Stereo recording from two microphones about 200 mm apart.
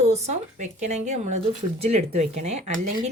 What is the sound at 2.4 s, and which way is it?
Speech, 35° right (ahead or behind).